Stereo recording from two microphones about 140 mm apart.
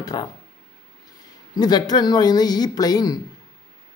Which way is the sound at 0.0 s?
25° left (ahead or behind).